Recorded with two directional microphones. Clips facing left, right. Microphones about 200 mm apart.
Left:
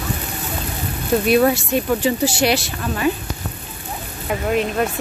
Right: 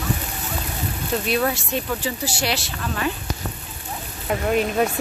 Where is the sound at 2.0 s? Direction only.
15° left (ahead or behind).